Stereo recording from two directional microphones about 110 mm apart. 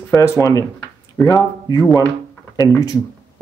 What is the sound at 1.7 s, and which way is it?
Speech, 35° left (ahead or behind).